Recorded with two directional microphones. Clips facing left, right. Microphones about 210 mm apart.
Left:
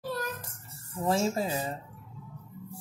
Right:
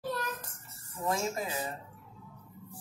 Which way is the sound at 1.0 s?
30° left (ahead or behind).